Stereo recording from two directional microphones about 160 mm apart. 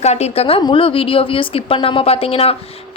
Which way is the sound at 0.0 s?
45° left (ahead or behind).